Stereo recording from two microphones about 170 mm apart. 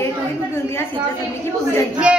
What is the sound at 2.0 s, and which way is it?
Speech, 10° right (ahead or behind).